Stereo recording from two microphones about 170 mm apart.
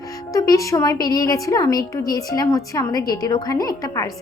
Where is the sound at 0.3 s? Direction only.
20° left (ahead or behind).